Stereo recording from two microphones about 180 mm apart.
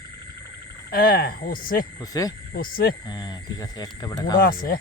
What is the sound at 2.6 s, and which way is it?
Speech, 55° left (ahead or behind).